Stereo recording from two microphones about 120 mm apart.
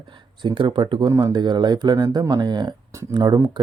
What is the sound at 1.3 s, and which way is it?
Speech, 40° right (ahead or behind).